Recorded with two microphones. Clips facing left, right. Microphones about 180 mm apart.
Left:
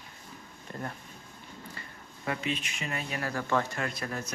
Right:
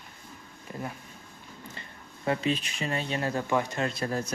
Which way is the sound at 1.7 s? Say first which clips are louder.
Right 1 dB; 25° right (ahead or behind).